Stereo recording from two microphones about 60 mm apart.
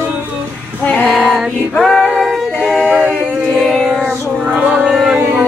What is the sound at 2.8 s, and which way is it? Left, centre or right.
A capella, centre.